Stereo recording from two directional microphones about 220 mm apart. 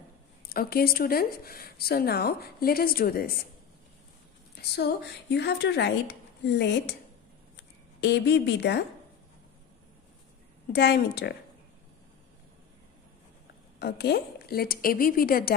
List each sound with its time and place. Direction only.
0.5 s a woman's voice: 45° left (ahead or behind)
4.6 s a woman's voice: 45° left (ahead or behind)
8.0 s a woman's voice: 50° left (ahead or behind)
10.7 s a woman's voice: 50° left (ahead or behind)
13.7 s a woman's voice: 45° left (ahead or behind)